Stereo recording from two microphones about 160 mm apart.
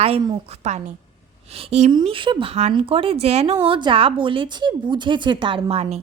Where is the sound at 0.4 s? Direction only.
45° right (ahead or behind).